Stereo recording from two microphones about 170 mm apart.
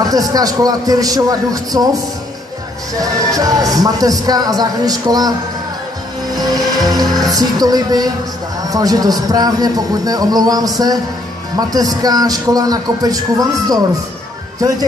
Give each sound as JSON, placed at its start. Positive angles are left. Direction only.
{"t": 0.0, "sound": "a man's voice", "side_deg": -20}
{"t": 3.0, "sound": "a man's voice", "side_deg": -20}
{"t": 6.3, "sound": "music", "side_deg": -20}
{"t": 7.2, "sound": "a man's voice", "side_deg": -20}